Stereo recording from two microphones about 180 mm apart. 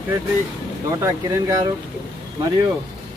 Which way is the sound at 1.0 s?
15° right (ahead or behind).